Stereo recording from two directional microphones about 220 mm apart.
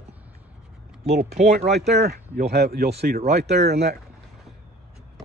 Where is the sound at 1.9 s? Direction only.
45° right (ahead or behind).